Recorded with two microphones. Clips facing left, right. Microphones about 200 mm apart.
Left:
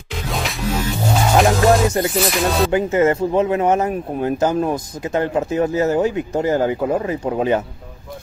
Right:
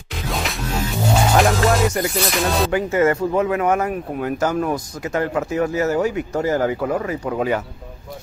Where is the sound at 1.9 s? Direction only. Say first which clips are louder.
Left 2 dB; 25° left (ahead or behind).